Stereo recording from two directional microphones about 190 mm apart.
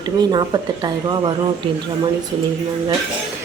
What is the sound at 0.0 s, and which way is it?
Speech, 20° right (ahead or behind).